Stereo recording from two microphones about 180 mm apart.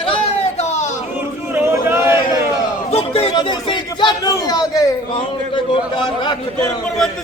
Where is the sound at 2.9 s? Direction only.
35° left (ahead or behind).